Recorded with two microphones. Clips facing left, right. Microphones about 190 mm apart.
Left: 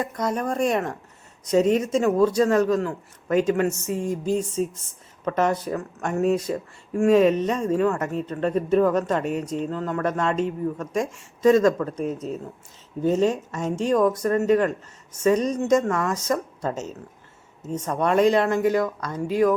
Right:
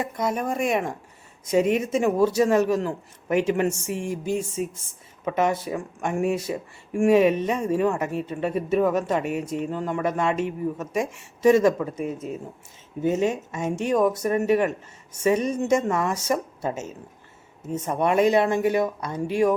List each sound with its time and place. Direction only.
0.2 s speech: 10° right (ahead or behind)
15.9 s a woman's voice: 20° right (ahead or behind)
16.1 s speech: 10° right (ahead or behind)
18.8 s a woman's voice: 25° right (ahead or behind)